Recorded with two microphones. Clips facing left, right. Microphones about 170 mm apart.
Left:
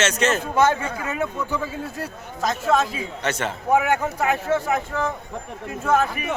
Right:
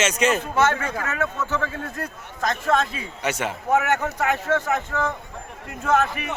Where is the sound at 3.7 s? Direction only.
10° left (ahead or behind).